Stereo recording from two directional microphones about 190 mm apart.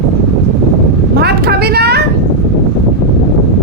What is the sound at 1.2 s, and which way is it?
Vehicle, 60° right (ahead or behind).